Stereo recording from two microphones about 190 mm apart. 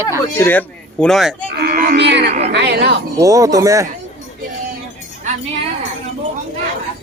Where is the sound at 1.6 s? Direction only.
50° right (ahead or behind).